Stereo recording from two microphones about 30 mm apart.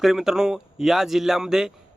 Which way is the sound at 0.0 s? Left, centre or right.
Centre.